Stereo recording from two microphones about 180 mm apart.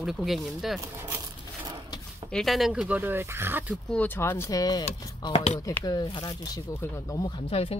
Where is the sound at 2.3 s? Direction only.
Centre (ahead or behind).